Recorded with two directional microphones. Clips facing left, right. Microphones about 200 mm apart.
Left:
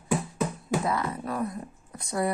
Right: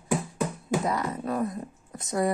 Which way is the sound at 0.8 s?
40° right (ahead or behind).